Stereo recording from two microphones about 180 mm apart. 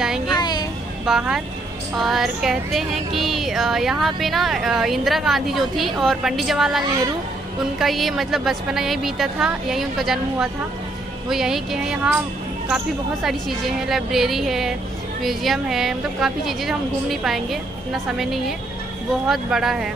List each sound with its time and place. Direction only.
0.3 s a sound: 20° left (ahead or behind)
1.0 s speech: 5° right (ahead or behind)
7.8 s speech: centre (ahead or behind)